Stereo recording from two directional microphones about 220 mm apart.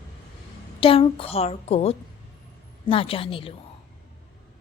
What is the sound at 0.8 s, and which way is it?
A woman's voice, 25° left (ahead or behind).